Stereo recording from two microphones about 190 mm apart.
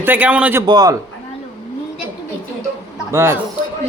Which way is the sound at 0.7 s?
20° right (ahead or behind).